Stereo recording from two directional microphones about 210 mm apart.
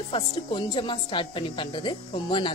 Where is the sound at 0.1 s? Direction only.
25° left (ahead or behind).